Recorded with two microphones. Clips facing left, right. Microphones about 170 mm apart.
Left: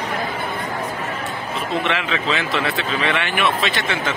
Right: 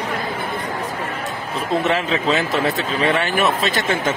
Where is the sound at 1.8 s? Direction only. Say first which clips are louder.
Right 3 dB; 40° right (ahead or behind).